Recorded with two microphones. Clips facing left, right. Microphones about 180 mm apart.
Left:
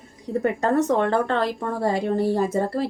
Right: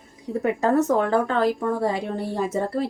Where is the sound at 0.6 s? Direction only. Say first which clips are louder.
Right 1 dB; 5° right (ahead or behind).